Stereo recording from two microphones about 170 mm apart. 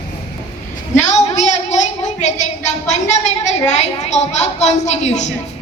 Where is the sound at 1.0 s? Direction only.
45° left (ahead or behind).